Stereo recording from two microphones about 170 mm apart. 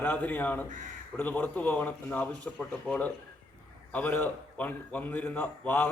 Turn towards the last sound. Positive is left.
turn(degrees=10)  # may be behind; listen again after turning